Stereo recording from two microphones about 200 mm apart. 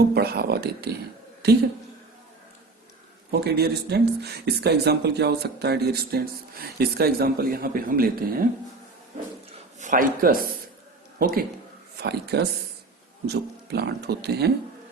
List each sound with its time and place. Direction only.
0.1 s a man's voice: 50° right (ahead or behind)
3.4 s a man's voice: 55° right (ahead or behind)
9.8 s a man's voice: 40° right (ahead or behind)
11.9 s speech: 55° right (ahead or behind)